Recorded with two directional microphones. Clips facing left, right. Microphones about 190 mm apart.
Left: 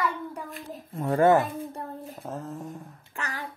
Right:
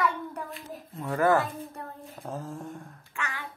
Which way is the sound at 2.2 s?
Centre (ahead or behind).